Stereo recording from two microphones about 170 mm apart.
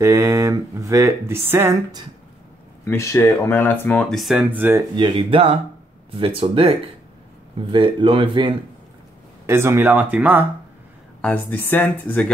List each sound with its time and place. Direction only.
0.0 s speech: 20° right (ahead or behind)
2.8 s speech: 15° left (ahead or behind); by 4.8 s 10° right (ahead or behind)
4.9 s speech: 30° right (ahead or behind)
7.7 s speech: 30° right (ahead or behind)
9.5 s speech: 15° right (ahead or behind)
11.1 s speech: 10° left (ahead or behind)